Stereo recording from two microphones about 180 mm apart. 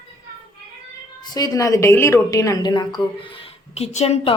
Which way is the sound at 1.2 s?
20° left (ahead or behind).